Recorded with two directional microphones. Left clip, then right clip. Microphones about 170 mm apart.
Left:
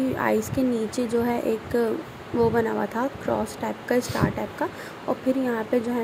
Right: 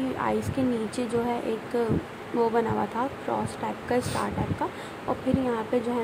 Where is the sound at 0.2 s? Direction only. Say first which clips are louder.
Left 3 dB; 15° left (ahead or behind).